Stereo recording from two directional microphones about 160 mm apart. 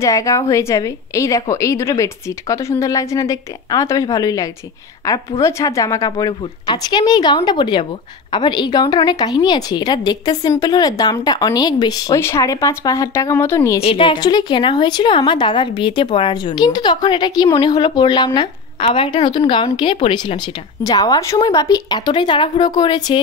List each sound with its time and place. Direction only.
0.0 s a woman's voice: 20° left (ahead or behind)
13.8 s a woman's voice: 35° left (ahead or behind)